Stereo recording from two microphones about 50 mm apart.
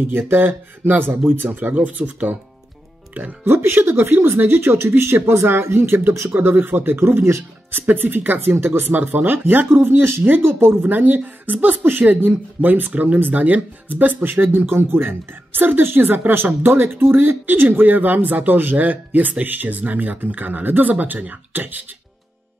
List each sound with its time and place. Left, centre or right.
0.3 s speech: right
3.4 s speech: right
8.5 s speech: right
8.9 s speech: right
9.7 s speech: right
10.8 s speech: right